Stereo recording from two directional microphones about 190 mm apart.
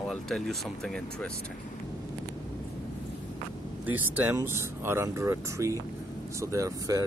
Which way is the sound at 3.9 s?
10° right (ahead or behind).